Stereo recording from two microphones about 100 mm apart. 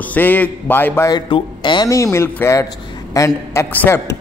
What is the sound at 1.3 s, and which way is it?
Speech, 55° left (ahead or behind).